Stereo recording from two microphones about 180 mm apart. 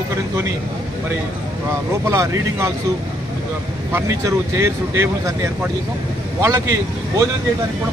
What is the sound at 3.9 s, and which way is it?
Speech, 15° right (ahead or behind).